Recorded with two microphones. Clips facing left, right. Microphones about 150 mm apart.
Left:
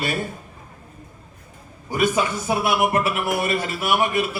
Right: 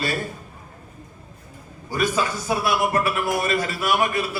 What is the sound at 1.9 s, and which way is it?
Speech, 20° left (ahead or behind).